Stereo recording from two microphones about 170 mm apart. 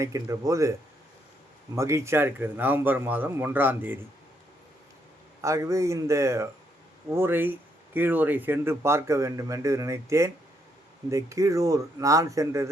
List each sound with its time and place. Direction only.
0.0 s speech: 20° right (ahead or behind)
5.4 s speech: 20° right (ahead or behind)